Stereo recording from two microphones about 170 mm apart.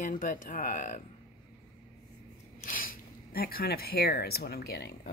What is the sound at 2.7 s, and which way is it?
Speech, 55° left (ahead or behind).